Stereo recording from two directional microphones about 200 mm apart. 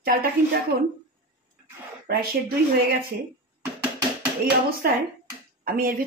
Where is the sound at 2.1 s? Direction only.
50° right (ahead or behind).